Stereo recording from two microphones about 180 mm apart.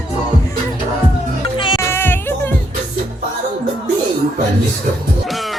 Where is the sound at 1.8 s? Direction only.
15° left (ahead or behind).